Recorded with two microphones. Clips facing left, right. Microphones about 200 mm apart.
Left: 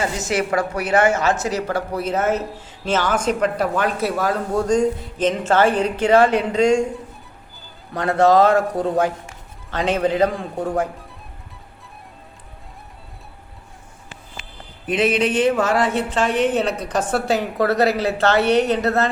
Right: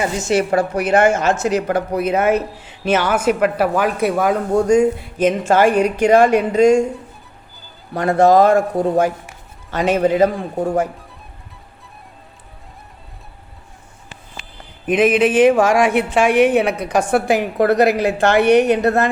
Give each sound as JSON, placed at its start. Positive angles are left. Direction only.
{"t": 0.3, "sound": "a woman's voice", "side_deg": -30}
{"t": 4.6, "sound": "a woman's voice", "side_deg": 0}
{"t": 7.9, "sound": "a woman's voice", "side_deg": -10}
{"t": 14.8, "sound": "a woman's voice", "side_deg": -10}